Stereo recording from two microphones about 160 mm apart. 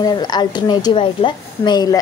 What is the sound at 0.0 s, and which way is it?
A woman's voice, 25° left (ahead or behind).